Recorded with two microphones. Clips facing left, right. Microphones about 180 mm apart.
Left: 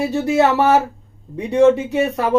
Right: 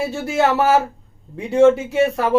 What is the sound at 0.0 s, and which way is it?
Speech, centre (ahead or behind).